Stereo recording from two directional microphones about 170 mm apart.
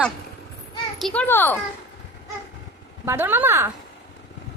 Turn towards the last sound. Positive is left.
turn(degrees=-15)  # may be behind; listen again after turning